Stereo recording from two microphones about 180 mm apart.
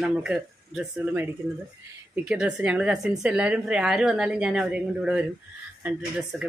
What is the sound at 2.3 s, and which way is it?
A woman's voice, 5° right (ahead or behind).